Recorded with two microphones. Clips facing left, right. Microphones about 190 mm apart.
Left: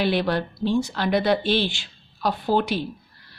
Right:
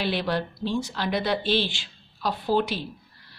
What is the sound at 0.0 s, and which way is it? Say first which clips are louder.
A woman's voice: left 4 dB; 55° left (ahead or behind).